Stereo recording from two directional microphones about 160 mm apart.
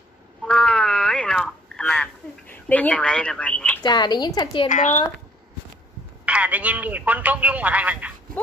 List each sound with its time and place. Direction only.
0.5 s a sound: 5° left (ahead or behind)
2.5 s a woman's voice: 10° left (ahead or behind)
3.8 s a woman's voice: 25° left (ahead or behind)
4.6 s a woman's voice: 50° left (ahead or behind)
6.2 s speech: 10° right (ahead or behind)